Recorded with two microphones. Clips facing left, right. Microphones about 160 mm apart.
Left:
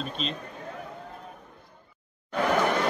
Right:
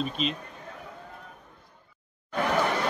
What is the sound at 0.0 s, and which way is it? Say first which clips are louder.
Speech: right 3 dB; 5° right (ahead or behind).